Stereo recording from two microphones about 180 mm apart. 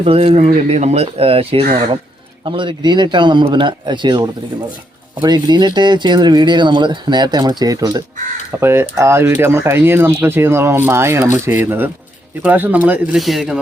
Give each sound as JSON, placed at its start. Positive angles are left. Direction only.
{"t": 0.0, "sound": "speech", "side_deg": -35}